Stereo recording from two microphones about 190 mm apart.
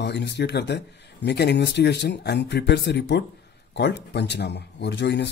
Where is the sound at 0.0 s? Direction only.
65° left (ahead or behind).